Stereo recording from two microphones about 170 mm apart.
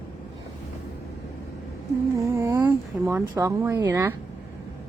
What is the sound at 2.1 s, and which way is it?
Speech, 15° right (ahead or behind).